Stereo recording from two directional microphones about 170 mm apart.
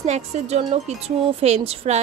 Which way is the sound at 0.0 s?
40° right (ahead or behind).